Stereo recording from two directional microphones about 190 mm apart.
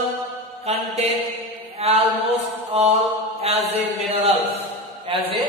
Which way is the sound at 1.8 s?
30° right (ahead or behind).